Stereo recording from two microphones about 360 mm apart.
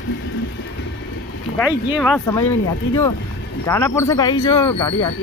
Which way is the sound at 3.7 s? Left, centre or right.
Centre.